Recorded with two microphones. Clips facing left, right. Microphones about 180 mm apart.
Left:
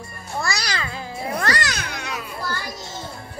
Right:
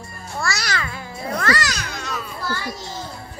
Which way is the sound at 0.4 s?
20° left (ahead or behind).